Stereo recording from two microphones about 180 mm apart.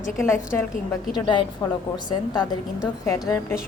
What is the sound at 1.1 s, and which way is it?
A woman's voice, 25° left (ahead or behind).